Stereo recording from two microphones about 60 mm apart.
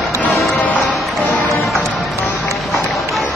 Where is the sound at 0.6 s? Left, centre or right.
Left.